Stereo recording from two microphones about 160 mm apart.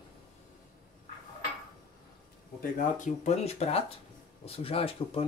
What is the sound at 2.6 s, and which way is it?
Speech, 55° left (ahead or behind).